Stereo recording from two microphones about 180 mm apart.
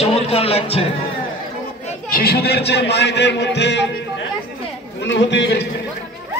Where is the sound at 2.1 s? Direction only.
60° left (ahead or behind); by 3.9 s 75° left (ahead or behind).